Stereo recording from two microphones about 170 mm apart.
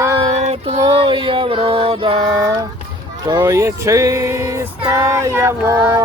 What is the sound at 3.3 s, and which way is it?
Speech, 15° right (ahead or behind).